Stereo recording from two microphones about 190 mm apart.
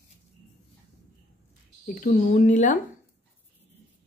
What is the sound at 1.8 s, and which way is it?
Speech, 45° left (ahead or behind).